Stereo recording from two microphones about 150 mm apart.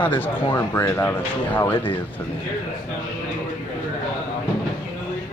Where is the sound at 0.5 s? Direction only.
20° left (ahead or behind).